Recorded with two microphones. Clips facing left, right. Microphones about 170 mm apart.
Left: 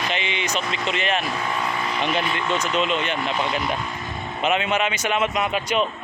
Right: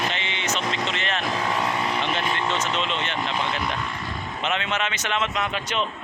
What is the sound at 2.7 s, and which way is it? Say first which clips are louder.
Speech: left 4 dB; 10° left (ahead or behind).